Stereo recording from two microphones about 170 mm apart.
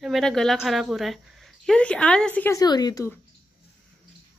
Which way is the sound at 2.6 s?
25° left (ahead or behind).